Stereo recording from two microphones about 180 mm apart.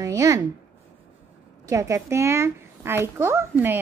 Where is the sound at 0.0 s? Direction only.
15° right (ahead or behind).